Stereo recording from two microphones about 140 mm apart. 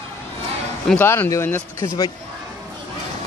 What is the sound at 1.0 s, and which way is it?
Speech, 15° left (ahead or behind).